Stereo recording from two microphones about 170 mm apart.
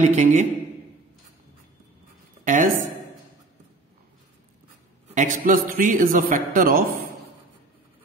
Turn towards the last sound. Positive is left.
turn(degrees=-55)  # may be behind; listen again after turning